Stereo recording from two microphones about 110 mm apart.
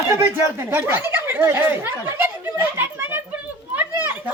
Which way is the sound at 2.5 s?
20° right (ahead or behind).